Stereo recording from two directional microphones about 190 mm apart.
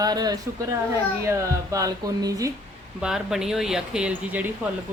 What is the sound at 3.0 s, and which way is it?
Speech, centre (ahead or behind).